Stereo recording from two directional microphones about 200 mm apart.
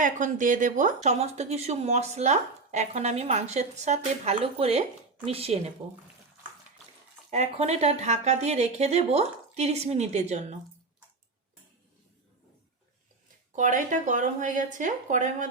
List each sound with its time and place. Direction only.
0.0 s speech: 40° right (ahead or behind)
7.3 s speech: 35° right (ahead or behind)
13.6 s speech: 40° right (ahead or behind)